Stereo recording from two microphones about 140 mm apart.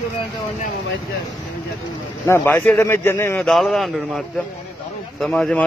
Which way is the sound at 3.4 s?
Centre (ahead or behind).